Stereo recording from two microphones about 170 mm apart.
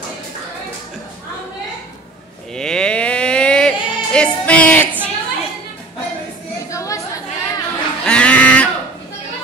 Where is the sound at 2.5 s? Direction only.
5° left (ahead or behind).